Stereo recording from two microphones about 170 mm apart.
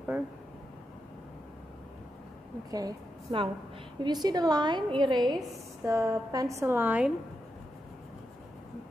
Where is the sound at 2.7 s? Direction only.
25° right (ahead or behind); by 7.1 s 10° right (ahead or behind).